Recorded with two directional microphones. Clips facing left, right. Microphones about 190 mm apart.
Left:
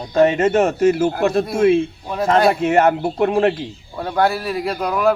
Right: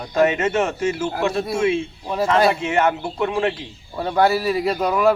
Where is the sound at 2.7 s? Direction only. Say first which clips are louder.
Left 5 dB; 40° left (ahead or behind).